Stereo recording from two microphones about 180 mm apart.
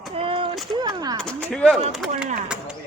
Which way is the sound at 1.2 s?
5° left (ahead or behind).